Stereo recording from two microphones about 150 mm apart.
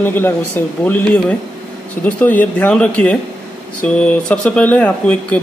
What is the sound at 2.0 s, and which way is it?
Speech, 10° left (ahead or behind).